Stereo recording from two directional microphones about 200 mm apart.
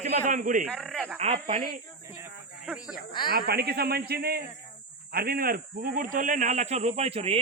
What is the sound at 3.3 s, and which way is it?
A man's voice, 50° right (ahead or behind).